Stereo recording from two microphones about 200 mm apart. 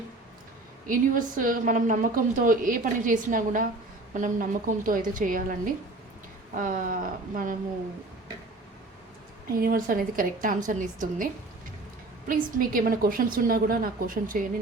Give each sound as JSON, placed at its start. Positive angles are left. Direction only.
{"t": 0.9, "sound": "a woman's voice", "side_deg": -45}
{"t": 9.5, "sound": "a woman's voice", "side_deg": -45}
{"t": 12.3, "sound": "a woman's voice", "side_deg": -45}